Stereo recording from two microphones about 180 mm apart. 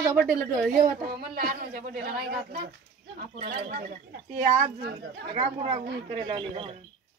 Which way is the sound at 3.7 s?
50° right (ahead or behind).